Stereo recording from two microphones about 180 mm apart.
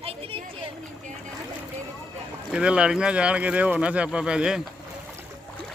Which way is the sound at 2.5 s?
5° right (ahead or behind).